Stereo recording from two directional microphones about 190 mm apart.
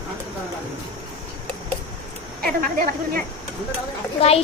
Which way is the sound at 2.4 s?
50° right (ahead or behind).